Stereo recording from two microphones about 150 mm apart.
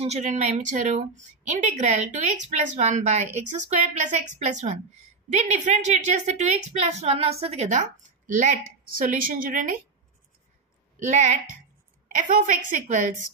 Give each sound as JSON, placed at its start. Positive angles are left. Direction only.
{"t": 0.0, "sound": "a woman's voice", "side_deg": -50}
{"t": 8.3, "sound": "a woman's voice", "side_deg": -60}
{"t": 11.0, "sound": "a woman's voice", "side_deg": -55}